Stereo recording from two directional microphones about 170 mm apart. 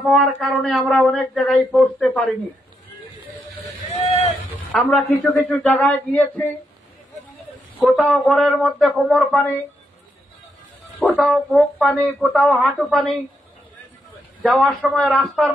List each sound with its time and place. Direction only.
0.1 s speech: centre (ahead or behind)
4.6 s a man's voice: 5° left (ahead or behind)
7.8 s speech: centre (ahead or behind)
11.0 s speech: centre (ahead or behind)
14.4 s speech: centre (ahead or behind)